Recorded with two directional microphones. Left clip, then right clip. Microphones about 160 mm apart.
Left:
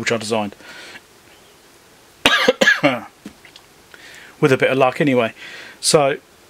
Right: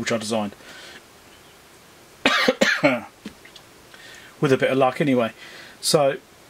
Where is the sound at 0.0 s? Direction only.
20° left (ahead or behind).